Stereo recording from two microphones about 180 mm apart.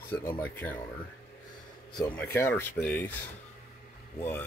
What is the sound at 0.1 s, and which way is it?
Speech, 10° left (ahead or behind).